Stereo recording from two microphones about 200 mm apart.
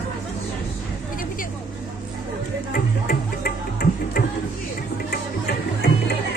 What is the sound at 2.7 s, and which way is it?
Music, 45° left (ahead or behind).